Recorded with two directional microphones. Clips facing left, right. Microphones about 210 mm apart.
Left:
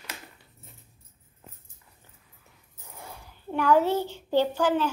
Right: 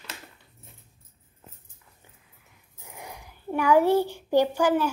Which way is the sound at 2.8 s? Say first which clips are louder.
Right 2 dB; 15° right (ahead or behind).